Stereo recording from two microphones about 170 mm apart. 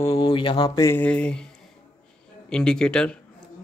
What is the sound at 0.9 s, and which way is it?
Speech, 10° left (ahead or behind).